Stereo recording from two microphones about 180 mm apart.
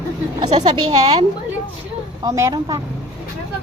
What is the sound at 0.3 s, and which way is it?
Speech, 40° right (ahead or behind).